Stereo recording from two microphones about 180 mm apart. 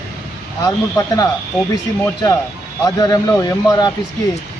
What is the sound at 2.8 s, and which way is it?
A man's voice, 20° left (ahead or behind).